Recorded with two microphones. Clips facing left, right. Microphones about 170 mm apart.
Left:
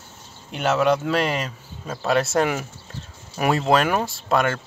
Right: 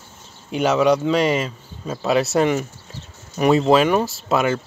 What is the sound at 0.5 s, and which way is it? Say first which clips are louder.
Speech: right 3 dB; centre (ahead or behind).